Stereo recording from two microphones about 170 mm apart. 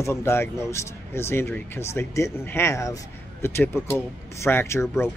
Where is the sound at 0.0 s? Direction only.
15° left (ahead or behind).